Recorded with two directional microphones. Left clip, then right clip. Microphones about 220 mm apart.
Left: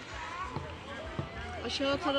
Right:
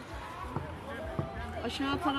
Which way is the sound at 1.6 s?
35° right (ahead or behind).